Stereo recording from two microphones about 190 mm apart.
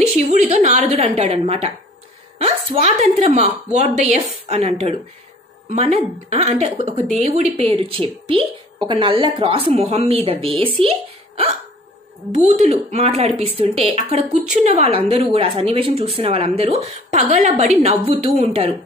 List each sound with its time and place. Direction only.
0.3 s a woman's voice: 35° right (ahead or behind)